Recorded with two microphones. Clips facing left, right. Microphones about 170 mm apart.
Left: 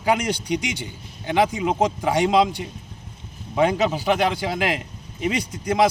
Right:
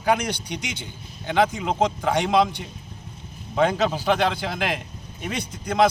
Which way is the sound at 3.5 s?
15° left (ahead or behind).